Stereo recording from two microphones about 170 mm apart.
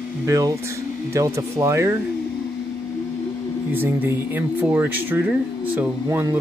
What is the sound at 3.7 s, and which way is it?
Music, 15° right (ahead or behind).